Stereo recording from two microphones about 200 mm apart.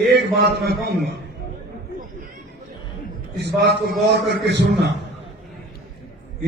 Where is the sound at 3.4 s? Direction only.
55° right (ahead or behind).